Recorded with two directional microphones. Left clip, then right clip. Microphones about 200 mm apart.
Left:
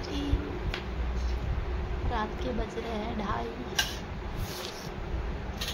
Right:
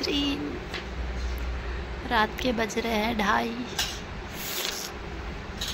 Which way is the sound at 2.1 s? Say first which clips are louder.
Right 9 dB; 15° right (ahead or behind).